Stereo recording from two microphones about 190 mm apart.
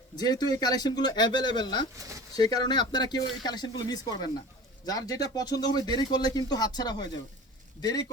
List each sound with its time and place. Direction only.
0.2 s speech: 20° left (ahead or behind)
2.0 s speech: 15° right (ahead or behind)
2.3 s speech: 20° left (ahead or behind)